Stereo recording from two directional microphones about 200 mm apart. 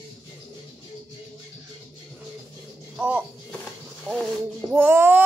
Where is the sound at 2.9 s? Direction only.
5° right (ahead or behind).